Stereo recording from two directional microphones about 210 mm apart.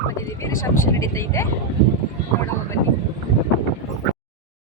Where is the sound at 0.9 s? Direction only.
15° left (ahead or behind).